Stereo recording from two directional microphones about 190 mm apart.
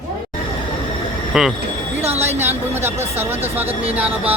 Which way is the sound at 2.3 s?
10° right (ahead or behind).